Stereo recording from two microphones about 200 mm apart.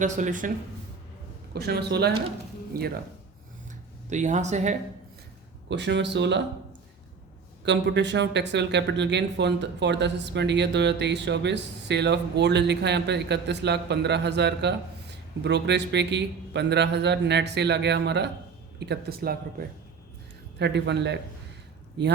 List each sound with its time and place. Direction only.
0.0 s speech: 40° right (ahead or behind)
1.5 s speech: 50° right (ahead or behind)
4.1 s speech: 35° right (ahead or behind)
5.6 s speech: 60° right (ahead or behind)
7.6 s speech: 60° right (ahead or behind)
20.6 s speech: 60° right (ahead or behind)